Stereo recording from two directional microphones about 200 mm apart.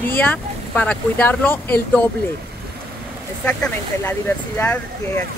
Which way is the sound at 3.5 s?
10° left (ahead or behind).